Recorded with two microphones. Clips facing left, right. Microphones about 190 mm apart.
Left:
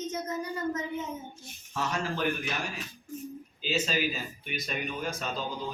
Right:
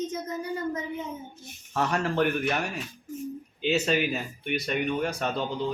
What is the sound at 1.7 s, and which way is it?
A man's voice, 65° right (ahead or behind).